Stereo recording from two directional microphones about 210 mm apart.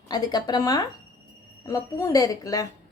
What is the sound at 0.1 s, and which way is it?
Speech, 20° left (ahead or behind).